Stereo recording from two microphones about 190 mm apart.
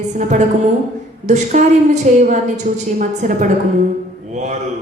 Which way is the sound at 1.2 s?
40° right (ahead or behind).